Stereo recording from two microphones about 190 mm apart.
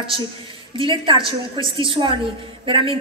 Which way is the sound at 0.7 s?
25° right (ahead or behind).